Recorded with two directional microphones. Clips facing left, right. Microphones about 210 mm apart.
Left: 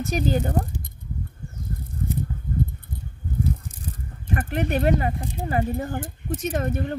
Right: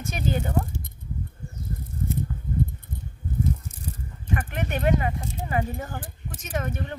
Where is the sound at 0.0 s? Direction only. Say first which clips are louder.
Left 4 dB; 35° left (ahead or behind).